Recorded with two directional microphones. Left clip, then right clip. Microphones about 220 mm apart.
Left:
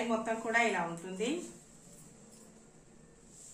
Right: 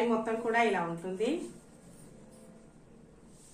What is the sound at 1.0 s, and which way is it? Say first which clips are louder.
Speech: right 4 dB; 15° left (ahead or behind).